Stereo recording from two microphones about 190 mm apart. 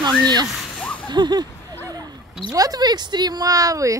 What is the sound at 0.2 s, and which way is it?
Speech, 20° right (ahead or behind).